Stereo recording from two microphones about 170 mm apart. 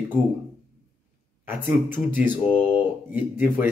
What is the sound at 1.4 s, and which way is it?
Speech, 10° right (ahead or behind).